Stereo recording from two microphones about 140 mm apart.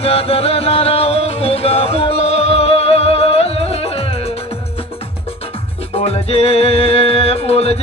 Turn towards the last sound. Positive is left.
turn(degrees=45)  # may be behind; listen again after turning